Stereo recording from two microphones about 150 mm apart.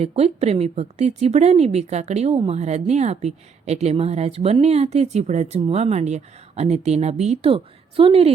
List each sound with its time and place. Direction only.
0.0 s speech: 45° right (ahead or behind)